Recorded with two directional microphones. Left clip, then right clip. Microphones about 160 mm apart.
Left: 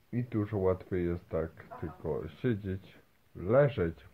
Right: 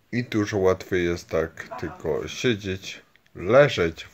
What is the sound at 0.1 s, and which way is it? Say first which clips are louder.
Speech: right 10 dB; 20° right (ahead or behind).